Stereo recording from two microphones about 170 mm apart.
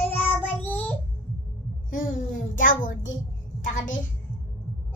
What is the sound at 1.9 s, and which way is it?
A child's voice, 50° left (ahead or behind).